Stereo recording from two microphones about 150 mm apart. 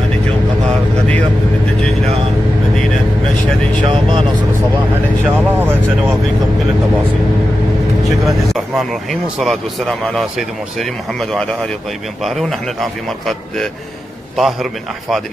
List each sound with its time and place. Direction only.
3.8 s vehicle: 35° right (ahead or behind)
5.2 s vehicle: 15° right (ahead or behind)
8.5 s speech: centre (ahead or behind)